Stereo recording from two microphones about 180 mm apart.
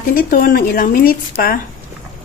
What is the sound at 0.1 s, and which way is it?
Speech, 50° left (ahead or behind).